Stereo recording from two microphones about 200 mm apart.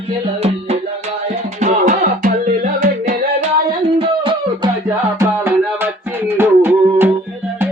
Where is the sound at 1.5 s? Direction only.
40° right (ahead or behind).